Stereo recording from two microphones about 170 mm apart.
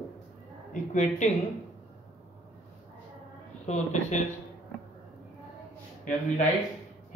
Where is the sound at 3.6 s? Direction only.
40° left (ahead or behind).